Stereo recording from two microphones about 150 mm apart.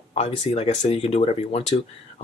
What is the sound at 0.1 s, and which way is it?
Speech, 40° left (ahead or behind).